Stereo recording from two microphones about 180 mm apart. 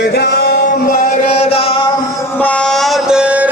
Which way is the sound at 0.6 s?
50° left (ahead or behind).